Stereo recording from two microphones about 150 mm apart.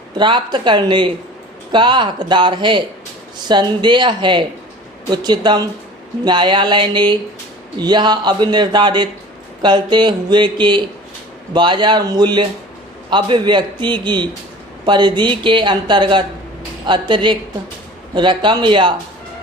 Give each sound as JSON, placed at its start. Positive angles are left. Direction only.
{"t": 0.2, "sound": "speech", "side_deg": -30}